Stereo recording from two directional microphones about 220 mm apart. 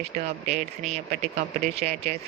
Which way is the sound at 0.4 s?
30° right (ahead or behind).